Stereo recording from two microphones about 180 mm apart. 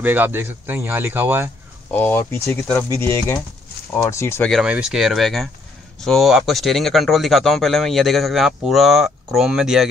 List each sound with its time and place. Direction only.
0.0 s speech: 10° right (ahead or behind)
1.9 s speech: 10° left (ahead or behind)
4.5 s speech: 5° right (ahead or behind)